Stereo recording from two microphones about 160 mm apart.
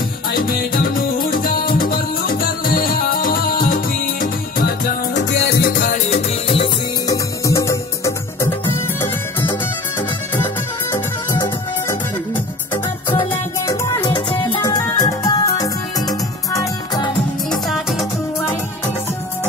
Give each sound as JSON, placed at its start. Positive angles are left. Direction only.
{"t": 0.3, "sound": "music", "side_deg": 65}
{"t": 5.1, "sound": "music", "side_deg": 90}
{"t": 6.0, "sound": "music", "side_deg": 45}
{"t": 7.1, "sound": "music", "side_deg": 20}
{"t": 10.9, "sound": "music", "side_deg": 20}
{"t": 13.7, "sound": "music", "side_deg": 20}
{"t": 14.0, "sound": "music", "side_deg": 30}
{"t": 17.5, "sound": "music", "side_deg": 0}